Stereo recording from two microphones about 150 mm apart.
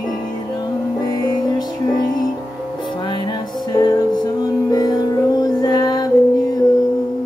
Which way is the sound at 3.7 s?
30° left (ahead or behind).